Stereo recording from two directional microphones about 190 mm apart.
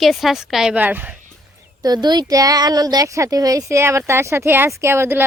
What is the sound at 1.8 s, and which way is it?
Speech, 20° right (ahead or behind).